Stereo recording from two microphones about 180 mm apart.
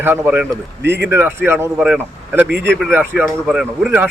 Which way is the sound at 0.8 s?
70° right (ahead or behind).